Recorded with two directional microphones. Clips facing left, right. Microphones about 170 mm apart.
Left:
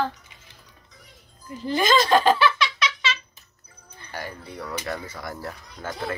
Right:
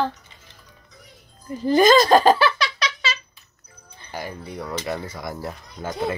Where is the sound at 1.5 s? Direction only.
40° right (ahead or behind).